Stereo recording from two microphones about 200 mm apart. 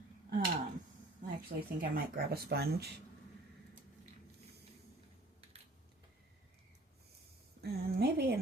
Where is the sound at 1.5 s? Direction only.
45° right (ahead or behind).